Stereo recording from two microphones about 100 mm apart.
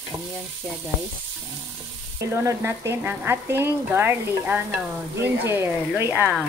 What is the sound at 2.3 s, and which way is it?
Speech, 25° right (ahead or behind).